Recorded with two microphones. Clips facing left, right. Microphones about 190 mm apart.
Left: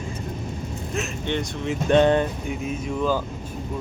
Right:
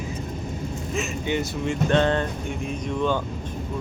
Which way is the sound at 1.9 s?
15° left (ahead or behind).